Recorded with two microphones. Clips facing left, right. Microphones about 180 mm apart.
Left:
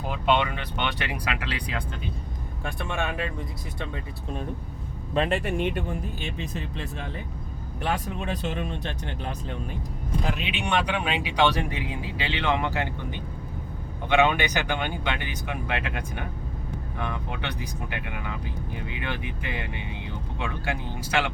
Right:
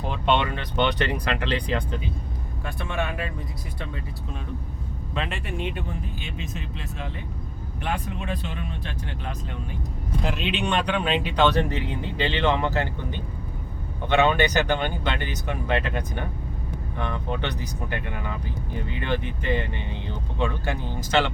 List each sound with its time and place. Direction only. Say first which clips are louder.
0.1 s speech: even; 5° left (ahead or behind)
5.1 s speech: left 6 dB; 40° left (ahead or behind)
7.8 s speech: left 1 dB; 40° left (ahead or behind)
10.2 s speech: right 4 dB; 5° left (ahead or behind)